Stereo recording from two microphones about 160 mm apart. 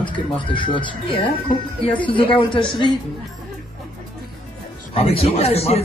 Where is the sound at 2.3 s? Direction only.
30° left (ahead or behind).